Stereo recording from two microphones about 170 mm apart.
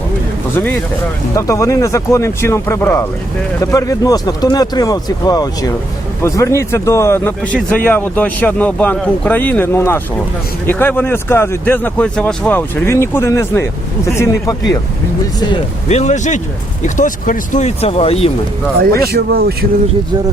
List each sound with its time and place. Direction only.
1.4 s speech: 20° left (ahead or behind)
15.9 s speech: 40° left (ahead or behind)
19.1 s speech: 65° right (ahead or behind)